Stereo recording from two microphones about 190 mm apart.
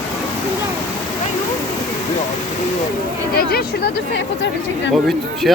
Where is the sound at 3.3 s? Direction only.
55° left (ahead or behind).